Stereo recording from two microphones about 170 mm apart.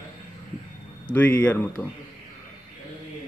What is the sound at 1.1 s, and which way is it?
Speech, 10° left (ahead or behind).